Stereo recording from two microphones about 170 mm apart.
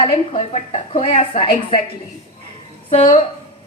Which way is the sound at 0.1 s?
35° left (ahead or behind).